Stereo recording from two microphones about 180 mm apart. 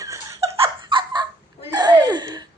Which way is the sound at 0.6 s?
25° right (ahead or behind).